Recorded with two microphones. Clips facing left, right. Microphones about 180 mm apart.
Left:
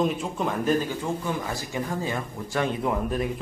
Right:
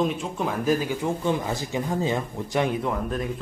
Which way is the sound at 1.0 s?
25° right (ahead or behind).